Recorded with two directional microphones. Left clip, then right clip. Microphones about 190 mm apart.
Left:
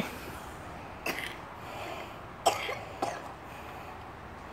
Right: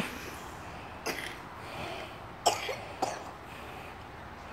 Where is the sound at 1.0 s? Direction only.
15° left (ahead or behind).